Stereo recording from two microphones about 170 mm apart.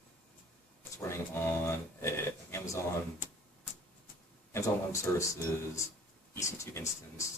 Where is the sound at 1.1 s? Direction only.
15° left (ahead or behind).